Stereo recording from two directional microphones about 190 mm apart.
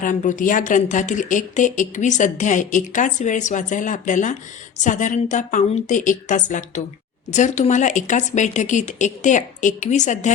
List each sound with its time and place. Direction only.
0.0 s speech: 45° left (ahead or behind)